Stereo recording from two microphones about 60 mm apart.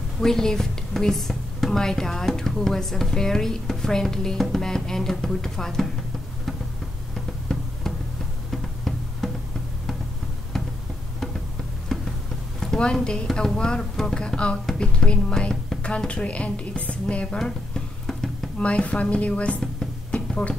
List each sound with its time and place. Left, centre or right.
0.2 s speech: centre
8.5 s music: centre
11.9 s a sound: centre
12.5 s speech: centre
17.4 s music: centre
18.6 s speech: centre
20.1 s music: centre